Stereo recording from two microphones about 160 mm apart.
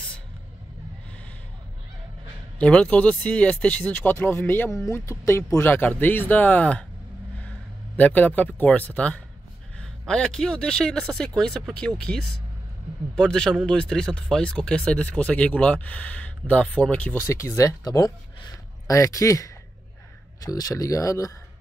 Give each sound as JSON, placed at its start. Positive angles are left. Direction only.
{"t": 2.6, "sound": "a man's voice", "side_deg": 10}